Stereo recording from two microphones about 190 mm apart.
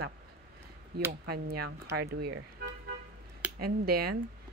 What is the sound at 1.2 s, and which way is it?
Speech, 55° right (ahead or behind).